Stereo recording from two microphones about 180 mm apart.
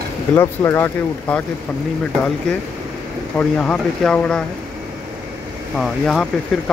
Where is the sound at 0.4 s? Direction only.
15° left (ahead or behind).